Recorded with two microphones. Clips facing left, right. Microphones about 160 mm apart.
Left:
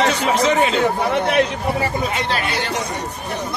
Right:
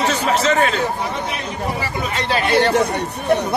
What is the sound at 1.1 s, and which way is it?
Speech, 70° left (ahead or behind).